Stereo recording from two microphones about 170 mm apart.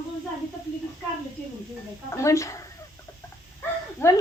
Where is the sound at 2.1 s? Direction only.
15° left (ahead or behind).